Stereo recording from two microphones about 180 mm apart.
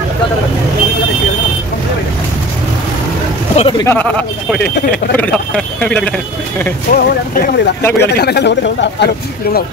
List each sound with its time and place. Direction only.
3.5 s speech: 30° left (ahead or behind)
3.8 s speech: 10° left (ahead or behind)
5.1 s speech: 10° left (ahead or behind)
6.9 s speech: 50° left (ahead or behind)
8.0 s speech: 65° left (ahead or behind)